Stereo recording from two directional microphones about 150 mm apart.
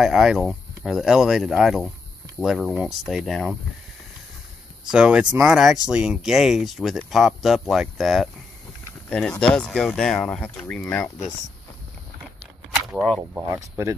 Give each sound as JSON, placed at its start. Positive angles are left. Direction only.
{"t": 0.0, "sound": "speech", "side_deg": 0}
{"t": 4.9, "sound": "speech", "side_deg": -5}
{"t": 9.4, "sound": "speech", "side_deg": 5}
{"t": 12.9, "sound": "speech", "side_deg": -10}